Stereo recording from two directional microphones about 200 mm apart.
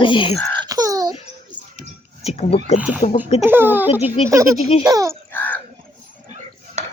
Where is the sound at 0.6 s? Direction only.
20° right (ahead or behind).